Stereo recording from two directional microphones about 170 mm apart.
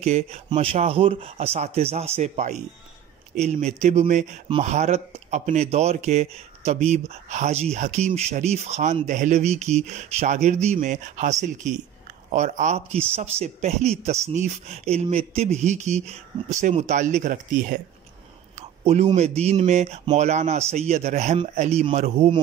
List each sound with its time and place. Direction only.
0.0 s speech: 40° right (ahead or behind)
18.9 s speech: 35° right (ahead or behind)